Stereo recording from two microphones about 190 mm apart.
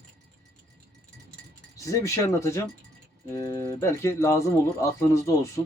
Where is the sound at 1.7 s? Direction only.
15° left (ahead or behind).